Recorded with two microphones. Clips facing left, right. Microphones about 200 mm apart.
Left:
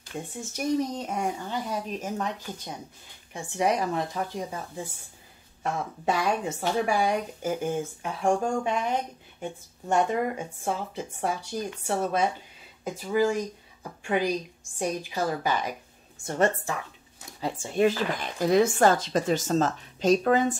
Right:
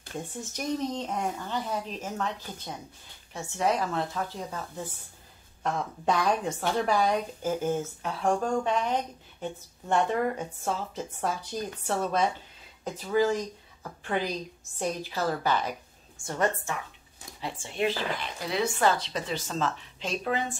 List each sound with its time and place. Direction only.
0.3 s speech: 10° left (ahead or behind)
16.3 s a woman's voice: 25° left (ahead or behind)
17.4 s speech: 40° left (ahead or behind)